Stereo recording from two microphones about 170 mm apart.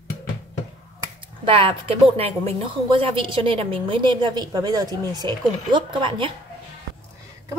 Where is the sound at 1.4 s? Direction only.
30° right (ahead or behind).